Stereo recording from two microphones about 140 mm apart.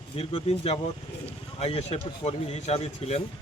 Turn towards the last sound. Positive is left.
turn(degrees=45)  # may be behind; listen again after turning